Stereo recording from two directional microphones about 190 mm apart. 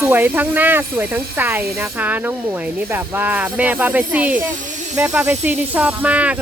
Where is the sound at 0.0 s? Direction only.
10° right (ahead or behind).